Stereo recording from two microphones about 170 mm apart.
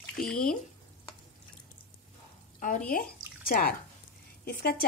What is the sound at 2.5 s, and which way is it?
A woman's voice, 50° left (ahead or behind).